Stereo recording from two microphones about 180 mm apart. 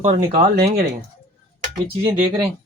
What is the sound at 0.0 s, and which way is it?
Speech, 30° right (ahead or behind).